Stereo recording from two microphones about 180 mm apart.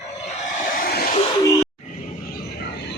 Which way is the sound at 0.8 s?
60° left (ahead or behind).